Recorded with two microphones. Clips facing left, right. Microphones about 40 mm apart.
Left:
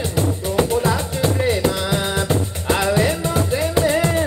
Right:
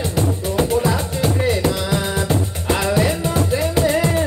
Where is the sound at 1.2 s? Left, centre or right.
Centre.